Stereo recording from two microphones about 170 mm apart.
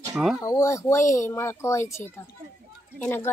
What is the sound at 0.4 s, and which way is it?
Speech, 20° left (ahead or behind).